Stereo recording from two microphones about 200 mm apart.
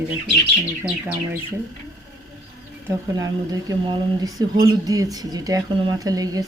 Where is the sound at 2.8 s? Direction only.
20° right (ahead or behind).